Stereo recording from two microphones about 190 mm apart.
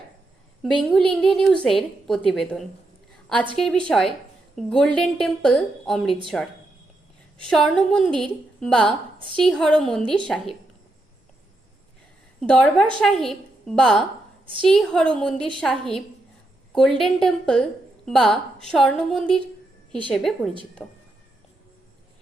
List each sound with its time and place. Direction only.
0.6 s a woman's voice: 5° left (ahead or behind)
8.9 s a woman's voice: 25° right (ahead or behind)
9.4 s a woman's voice: 5° left (ahead or behind)
12.4 s a woman's voice: 5° left (ahead or behind)